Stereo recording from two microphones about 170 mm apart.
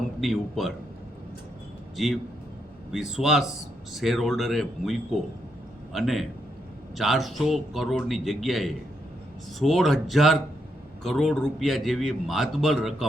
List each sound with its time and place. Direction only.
0.2 s a man's voice: centre (ahead or behind)
2.0 s a man's voice: centre (ahead or behind)